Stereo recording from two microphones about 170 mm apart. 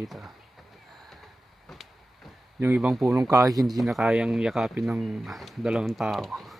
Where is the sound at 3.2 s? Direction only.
20° right (ahead or behind).